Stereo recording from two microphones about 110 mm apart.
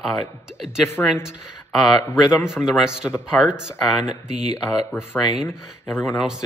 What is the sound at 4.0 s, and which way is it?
Speech, 90° right.